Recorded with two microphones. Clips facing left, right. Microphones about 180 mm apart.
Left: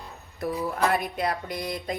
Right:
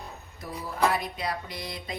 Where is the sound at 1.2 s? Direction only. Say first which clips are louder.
Left 5 dB; 50° left (ahead or behind).